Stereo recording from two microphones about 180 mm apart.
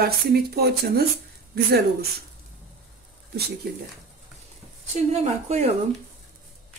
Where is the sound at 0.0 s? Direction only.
60° right (ahead or behind).